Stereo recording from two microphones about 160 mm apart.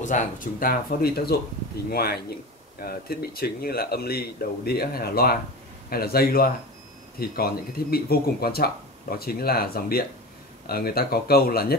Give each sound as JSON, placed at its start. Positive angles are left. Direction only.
{"t": 0.0, "sound": "speech", "side_deg": 55}